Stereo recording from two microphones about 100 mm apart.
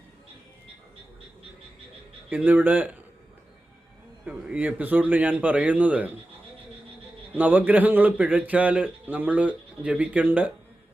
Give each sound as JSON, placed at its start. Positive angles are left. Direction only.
{"t": 2.3, "sound": "speech", "side_deg": -20}
{"t": 4.3, "sound": "speech", "side_deg": -15}
{"t": 7.3, "sound": "speech", "side_deg": -20}